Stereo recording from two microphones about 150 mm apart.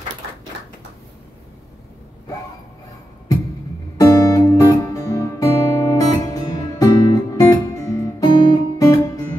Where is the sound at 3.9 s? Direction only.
25° left (ahead or behind).